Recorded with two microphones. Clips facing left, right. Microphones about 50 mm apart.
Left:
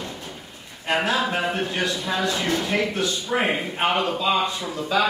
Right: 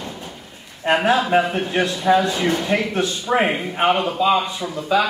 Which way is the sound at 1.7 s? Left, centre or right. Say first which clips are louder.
Right 8 dB; right.